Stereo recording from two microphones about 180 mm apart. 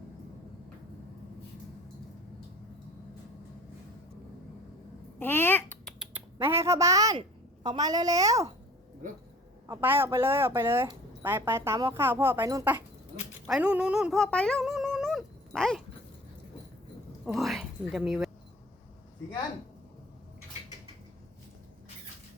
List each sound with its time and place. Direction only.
5.2 s a sound: 10° left (ahead or behind)
6.0 s typing: 10° right (ahead or behind)
7.2 s a child's voice: 25° right (ahead or behind)
9.6 s speech: 10° right (ahead or behind)
13.5 s a sound: 5° right (ahead or behind)
17.2 s a woman's voice: centre (ahead or behind)